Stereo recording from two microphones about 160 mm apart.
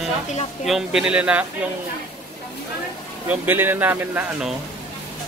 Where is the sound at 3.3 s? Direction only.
15° right (ahead or behind).